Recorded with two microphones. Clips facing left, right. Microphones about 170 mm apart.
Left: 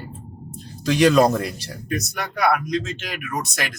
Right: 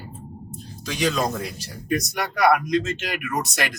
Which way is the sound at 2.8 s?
Centre (ahead or behind).